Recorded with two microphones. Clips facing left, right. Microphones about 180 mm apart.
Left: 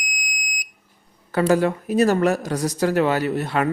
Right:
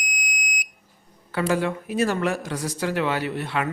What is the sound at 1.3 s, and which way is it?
Speech, 40° left (ahead or behind).